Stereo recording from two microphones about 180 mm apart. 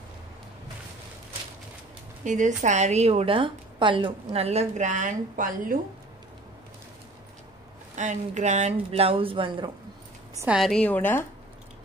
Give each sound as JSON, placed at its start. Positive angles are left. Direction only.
{"t": 2.2, "sound": "a woman's voice", "side_deg": -45}
{"t": 7.9, "sound": "a woman's voice", "side_deg": -40}
{"t": 10.3, "sound": "a woman's voice", "side_deg": -10}
{"t": 10.6, "sound": "a woman's voice", "side_deg": 5}